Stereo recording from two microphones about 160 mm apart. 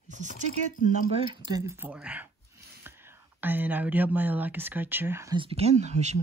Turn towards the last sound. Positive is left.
turn(degrees=-45)  # may be behind; listen again after turning